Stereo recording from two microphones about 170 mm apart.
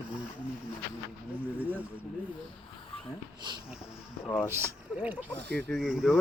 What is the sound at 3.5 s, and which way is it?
Speech, 25° right (ahead or behind).